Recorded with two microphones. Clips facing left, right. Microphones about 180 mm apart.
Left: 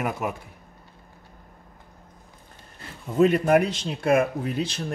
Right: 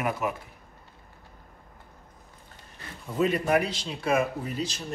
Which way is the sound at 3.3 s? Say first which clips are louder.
Left 5 dB; 55° left (ahead or behind).